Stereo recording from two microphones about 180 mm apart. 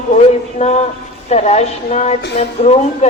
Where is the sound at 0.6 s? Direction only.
35° left (ahead or behind).